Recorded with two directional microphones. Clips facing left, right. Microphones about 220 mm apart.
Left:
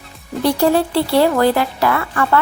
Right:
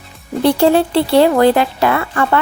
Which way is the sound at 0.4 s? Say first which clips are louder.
Right 3 dB; 25° right (ahead or behind).